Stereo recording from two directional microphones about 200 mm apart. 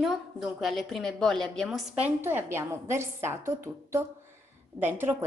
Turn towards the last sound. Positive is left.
turn(degrees=-10)  # may be behind; listen again after turning